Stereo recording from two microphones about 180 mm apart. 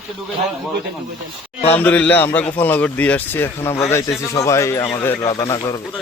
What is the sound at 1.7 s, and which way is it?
Speech, 10° left (ahead or behind).